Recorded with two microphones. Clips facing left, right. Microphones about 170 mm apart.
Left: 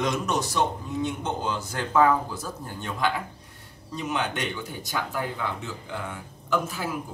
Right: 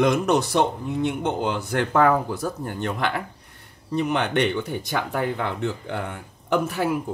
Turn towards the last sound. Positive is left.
turn(degrees=-65)  # may be behind; listen again after turning